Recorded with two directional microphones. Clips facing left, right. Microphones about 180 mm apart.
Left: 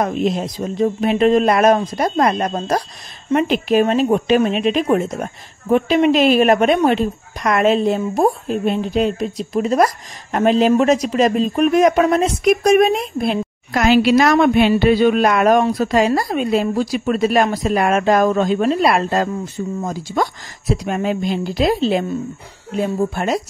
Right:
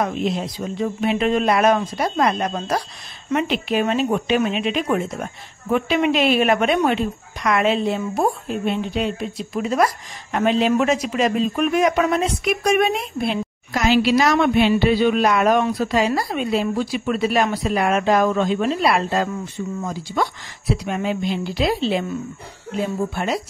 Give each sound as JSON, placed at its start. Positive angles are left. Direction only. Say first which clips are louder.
{"t": 0.0, "sound": "speech", "louder": "left 4 dB", "side_deg": 45}